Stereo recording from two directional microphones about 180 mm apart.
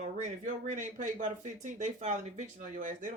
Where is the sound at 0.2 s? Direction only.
40° right (ahead or behind).